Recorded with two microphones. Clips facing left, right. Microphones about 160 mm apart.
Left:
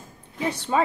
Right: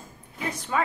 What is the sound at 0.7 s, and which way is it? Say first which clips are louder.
Speech: left 4 dB; 25° left (ahead or behind).